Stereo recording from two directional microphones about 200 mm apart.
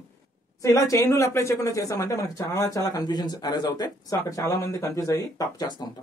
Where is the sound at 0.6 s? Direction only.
15° left (ahead or behind).